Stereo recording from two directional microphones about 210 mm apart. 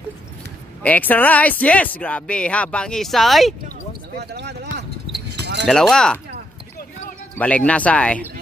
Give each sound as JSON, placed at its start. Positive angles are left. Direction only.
{"t": 0.8, "sound": "speech", "side_deg": 10}
{"t": 4.2, "sound": "speech", "side_deg": -50}
{"t": 5.3, "sound": "livestock", "side_deg": -55}
{"t": 5.7, "sound": "speech", "side_deg": 5}
{"t": 7.3, "sound": "speech", "side_deg": 5}